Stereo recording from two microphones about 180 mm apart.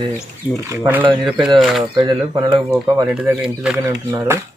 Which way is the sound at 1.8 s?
25° right (ahead or behind).